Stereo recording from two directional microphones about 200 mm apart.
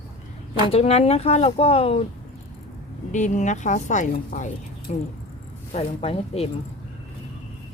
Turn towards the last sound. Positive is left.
turn(degrees=30)  # may be behind; listen again after turning